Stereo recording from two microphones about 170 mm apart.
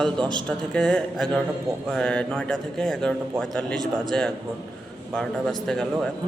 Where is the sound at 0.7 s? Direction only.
5° left (ahead or behind).